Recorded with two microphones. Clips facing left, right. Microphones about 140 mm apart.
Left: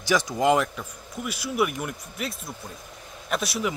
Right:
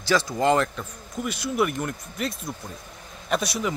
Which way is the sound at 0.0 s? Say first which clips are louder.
Even; 15° left (ahead or behind).